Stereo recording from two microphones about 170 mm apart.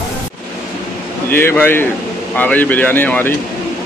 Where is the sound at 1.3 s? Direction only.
15° left (ahead or behind).